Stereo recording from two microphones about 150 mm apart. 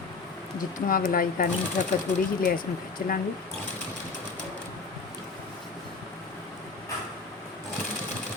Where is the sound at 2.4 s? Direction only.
70° left (ahead or behind).